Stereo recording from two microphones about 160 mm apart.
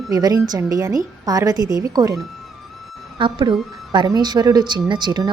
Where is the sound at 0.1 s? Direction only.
25° right (ahead or behind).